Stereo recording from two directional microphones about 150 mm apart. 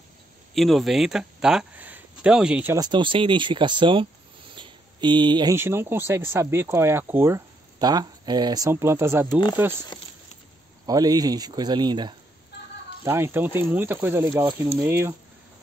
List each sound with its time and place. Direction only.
0.6 s speech: centre (ahead or behind)
2.7 s speech: 30° right (ahead or behind)
4.6 s a sound: 30° right (ahead or behind)
5.5 s speech: 15° right (ahead or behind)
8.6 s speech: 15° right (ahead or behind)
10.9 s speech: 25° right (ahead or behind)
13.0 s speech: 15° right (ahead or behind)